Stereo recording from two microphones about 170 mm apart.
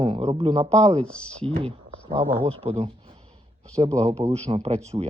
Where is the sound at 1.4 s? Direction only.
35° right (ahead or behind).